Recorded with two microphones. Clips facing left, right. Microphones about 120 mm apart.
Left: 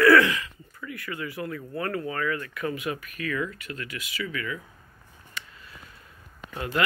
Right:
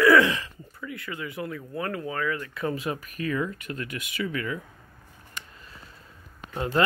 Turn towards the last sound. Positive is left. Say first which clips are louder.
# right 4 dB
turn(degrees=-30)  # may be behind; listen again after turning